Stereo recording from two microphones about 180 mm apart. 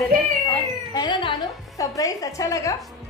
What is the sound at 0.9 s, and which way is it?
A woman's voice, 25° left (ahead or behind).